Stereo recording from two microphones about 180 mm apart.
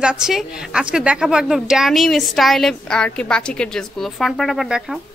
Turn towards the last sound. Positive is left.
turn(degrees=0)  # may be behind; listen again after turning